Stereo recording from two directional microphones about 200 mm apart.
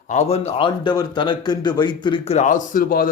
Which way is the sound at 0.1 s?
35° left (ahead or behind).